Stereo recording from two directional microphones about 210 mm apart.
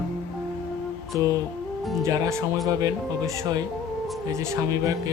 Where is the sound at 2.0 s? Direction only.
15° right (ahead or behind).